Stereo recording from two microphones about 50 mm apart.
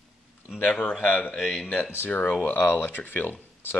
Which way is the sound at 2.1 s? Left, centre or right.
Left.